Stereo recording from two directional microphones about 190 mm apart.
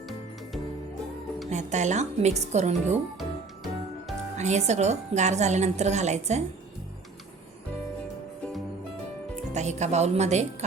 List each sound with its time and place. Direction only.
1.5 s a woman's voice: 40° right (ahead or behind)
4.4 s a woman's voice: 35° right (ahead or behind)
9.5 s a woman's voice: 40° right (ahead or behind)